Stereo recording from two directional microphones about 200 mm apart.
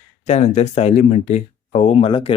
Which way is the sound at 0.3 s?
35° left (ahead or behind).